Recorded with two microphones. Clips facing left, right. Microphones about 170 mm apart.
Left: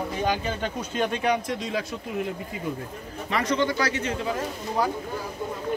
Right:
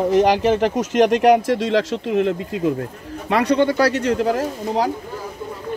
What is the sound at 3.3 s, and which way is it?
Speech, 65° right (ahead or behind).